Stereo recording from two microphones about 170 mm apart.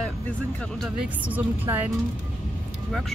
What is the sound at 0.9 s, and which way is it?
Speech, 10° right (ahead or behind).